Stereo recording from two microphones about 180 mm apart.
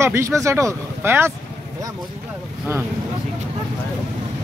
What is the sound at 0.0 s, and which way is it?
Speech, 15° right (ahead or behind).